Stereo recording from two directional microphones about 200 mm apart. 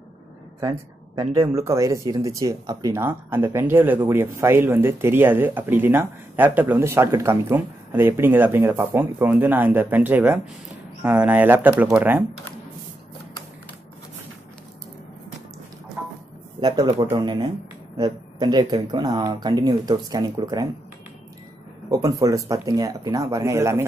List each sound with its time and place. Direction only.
0.6 s speech: 20° right (ahead or behind)
16.6 s speech: 20° right (ahead or behind)
21.9 s speech: 15° right (ahead or behind)